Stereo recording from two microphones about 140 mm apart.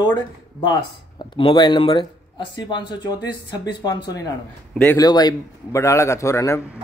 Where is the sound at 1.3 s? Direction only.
35° left (ahead or behind).